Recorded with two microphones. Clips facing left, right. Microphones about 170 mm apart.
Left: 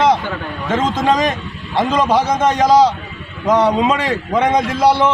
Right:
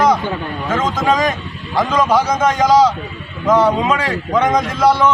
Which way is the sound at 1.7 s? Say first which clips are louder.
Even; 25° left (ahead or behind).